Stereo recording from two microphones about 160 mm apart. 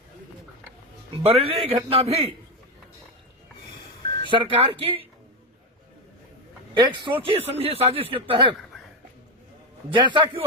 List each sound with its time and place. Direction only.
1.1 s speech: 40° right (ahead or behind)
4.3 s speech: 30° right (ahead or behind)
6.7 s speech: 30° right (ahead or behind)
9.9 s a man's voice: 30° right (ahead or behind)